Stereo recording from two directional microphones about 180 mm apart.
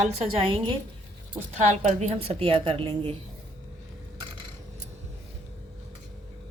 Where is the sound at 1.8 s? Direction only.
35° right (ahead or behind).